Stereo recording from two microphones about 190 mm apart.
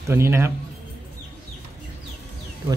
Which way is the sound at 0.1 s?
15° right (ahead or behind).